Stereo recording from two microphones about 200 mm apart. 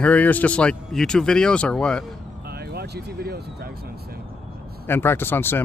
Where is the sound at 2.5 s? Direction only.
50° right (ahead or behind).